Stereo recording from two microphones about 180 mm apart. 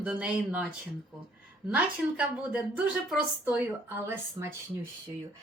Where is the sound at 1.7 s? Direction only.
5° right (ahead or behind).